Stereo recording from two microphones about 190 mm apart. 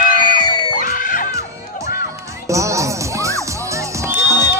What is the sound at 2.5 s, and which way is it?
Music, 15° right (ahead or behind).